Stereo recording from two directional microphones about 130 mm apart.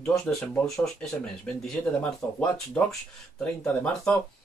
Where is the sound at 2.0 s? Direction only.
10° left (ahead or behind).